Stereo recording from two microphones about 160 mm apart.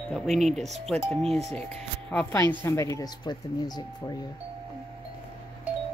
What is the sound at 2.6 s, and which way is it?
Speech, 15° left (ahead or behind).